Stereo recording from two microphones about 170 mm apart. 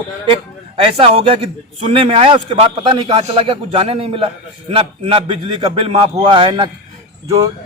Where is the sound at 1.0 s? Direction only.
30° right (ahead or behind).